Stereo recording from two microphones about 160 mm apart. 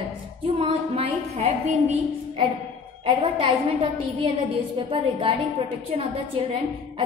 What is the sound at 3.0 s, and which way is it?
A woman's voice, 30° right (ahead or behind).